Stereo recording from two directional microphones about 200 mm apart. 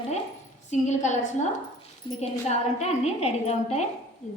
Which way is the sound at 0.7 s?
35° left (ahead or behind).